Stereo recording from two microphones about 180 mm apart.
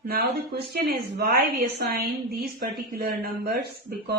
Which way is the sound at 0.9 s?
60° right (ahead or behind).